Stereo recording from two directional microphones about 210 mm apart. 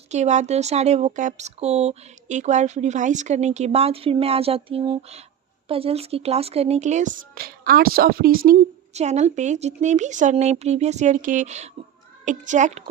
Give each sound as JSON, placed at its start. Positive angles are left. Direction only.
{"t": 0.1, "sound": "speech", "side_deg": -35}
{"t": 8.4, "sound": "speech", "side_deg": -30}